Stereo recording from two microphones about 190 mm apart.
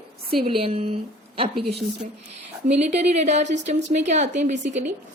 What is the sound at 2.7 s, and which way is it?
A woman's voice, 35° right (ahead or behind).